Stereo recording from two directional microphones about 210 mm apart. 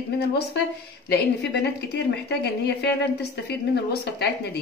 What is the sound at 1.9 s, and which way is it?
A woman's voice, 50° left (ahead or behind).